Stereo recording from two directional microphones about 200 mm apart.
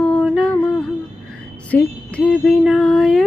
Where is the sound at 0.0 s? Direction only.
5° left (ahead or behind).